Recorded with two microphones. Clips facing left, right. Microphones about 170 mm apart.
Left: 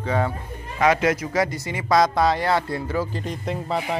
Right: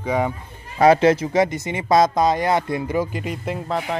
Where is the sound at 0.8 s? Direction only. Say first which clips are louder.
Right 6 dB; 30° right (ahead or behind).